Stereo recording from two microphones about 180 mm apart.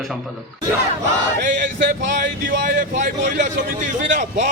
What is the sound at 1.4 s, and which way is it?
Speech, 45° right (ahead or behind).